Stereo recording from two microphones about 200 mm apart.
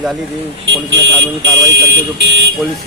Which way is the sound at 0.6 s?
65° right (ahead or behind).